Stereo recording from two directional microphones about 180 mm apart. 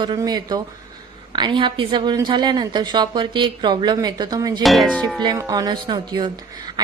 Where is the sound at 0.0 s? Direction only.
25° right (ahead or behind).